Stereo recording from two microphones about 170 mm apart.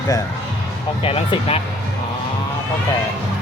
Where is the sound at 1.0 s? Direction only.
35° left (ahead or behind).